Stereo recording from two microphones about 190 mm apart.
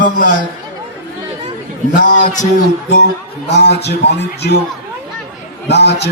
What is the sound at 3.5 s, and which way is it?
A man's voice, 60° left (ahead or behind).